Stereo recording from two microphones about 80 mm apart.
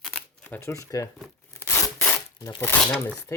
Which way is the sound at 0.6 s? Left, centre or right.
Left.